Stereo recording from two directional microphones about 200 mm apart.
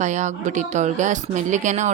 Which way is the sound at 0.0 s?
35° right (ahead or behind).